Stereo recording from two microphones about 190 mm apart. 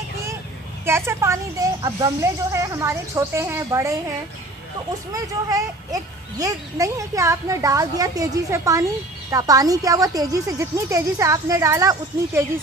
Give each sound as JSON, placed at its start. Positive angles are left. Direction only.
{"t": 0.8, "sound": "a woman's voice", "side_deg": -15}
{"t": 6.3, "sound": "a woman's voice", "side_deg": -15}